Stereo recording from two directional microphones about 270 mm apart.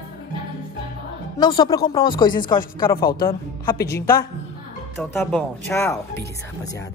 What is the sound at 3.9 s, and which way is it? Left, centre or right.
Speech, centre.